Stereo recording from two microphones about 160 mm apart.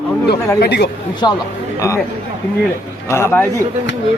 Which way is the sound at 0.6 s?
90° left.